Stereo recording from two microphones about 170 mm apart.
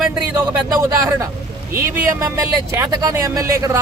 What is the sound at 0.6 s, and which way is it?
Speech, 20° right (ahead or behind).